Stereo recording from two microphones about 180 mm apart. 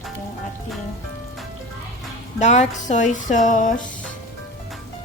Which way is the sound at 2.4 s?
40° left (ahead or behind).